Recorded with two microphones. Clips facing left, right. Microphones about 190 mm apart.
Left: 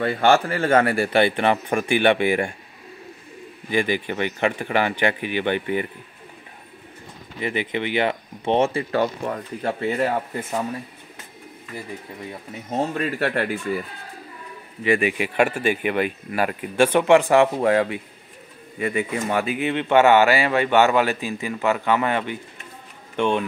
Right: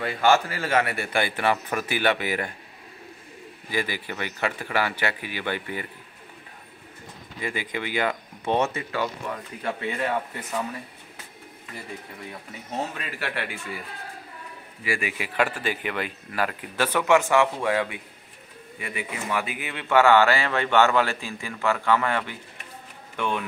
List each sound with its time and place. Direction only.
0.0 s speech: 35° left (ahead or behind)
0.3 s speech: 55° left (ahead or behind)
0.8 s speech: 30° left (ahead or behind)
3.7 s speech: 20° left (ahead or behind)
7.3 s speech: 25° left (ahead or behind)
12.9 s speech: 45° left (ahead or behind)
14.8 s speech: 20° left (ahead or behind)
16.9 s speech: 30° left (ahead or behind)